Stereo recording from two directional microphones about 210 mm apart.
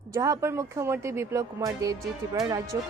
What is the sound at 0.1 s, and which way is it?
Speech, 15° right (ahead or behind).